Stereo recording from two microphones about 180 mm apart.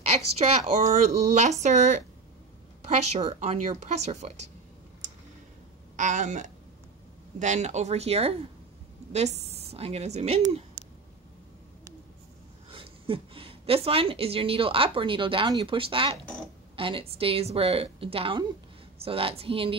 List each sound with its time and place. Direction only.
0.4 s speech: 35° right (ahead or behind)
5.9 s speech: 45° right (ahead or behind)
12.7 s a woman's voice: 30° right (ahead or behind)